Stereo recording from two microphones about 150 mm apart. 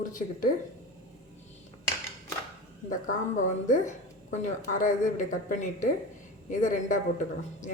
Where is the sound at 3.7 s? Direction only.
55° left (ahead or behind).